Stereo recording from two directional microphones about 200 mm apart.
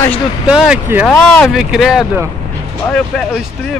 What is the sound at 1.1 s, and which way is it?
Speech, 5° left (ahead or behind).